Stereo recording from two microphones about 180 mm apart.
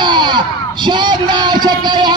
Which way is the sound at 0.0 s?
25° right (ahead or behind).